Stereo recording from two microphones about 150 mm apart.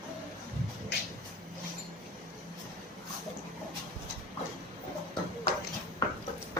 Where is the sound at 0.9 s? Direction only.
90° left.